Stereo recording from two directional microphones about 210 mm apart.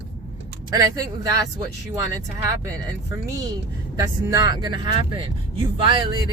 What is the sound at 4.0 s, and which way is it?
Speech, 15° right (ahead or behind).